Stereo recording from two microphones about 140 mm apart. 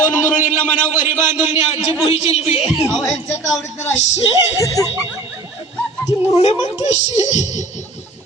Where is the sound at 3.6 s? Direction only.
55° left (ahead or behind).